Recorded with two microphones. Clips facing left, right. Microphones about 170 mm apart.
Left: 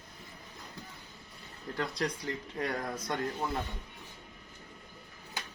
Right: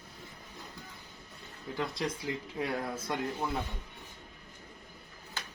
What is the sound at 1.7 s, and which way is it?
Speech, centre (ahead or behind).